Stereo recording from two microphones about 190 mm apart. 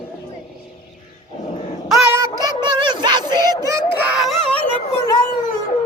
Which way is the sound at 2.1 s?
20° right (ahead or behind).